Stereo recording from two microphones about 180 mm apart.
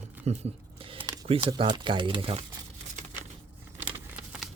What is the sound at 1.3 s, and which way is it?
Speech, 30° right (ahead or behind).